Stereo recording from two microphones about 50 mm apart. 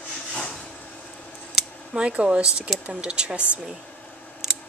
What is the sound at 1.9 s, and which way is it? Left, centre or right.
Speech, right.